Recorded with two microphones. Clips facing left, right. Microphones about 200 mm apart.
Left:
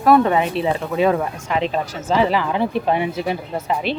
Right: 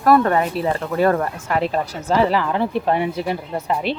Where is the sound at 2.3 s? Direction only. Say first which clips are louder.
Even; 15° left (ahead or behind).